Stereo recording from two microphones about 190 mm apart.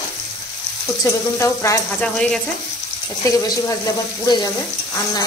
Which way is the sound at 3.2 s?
20° left (ahead or behind).